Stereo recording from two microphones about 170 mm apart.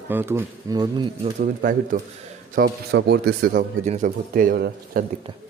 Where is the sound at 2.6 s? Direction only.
75° right (ahead or behind); by 5.0 s 60° right (ahead or behind).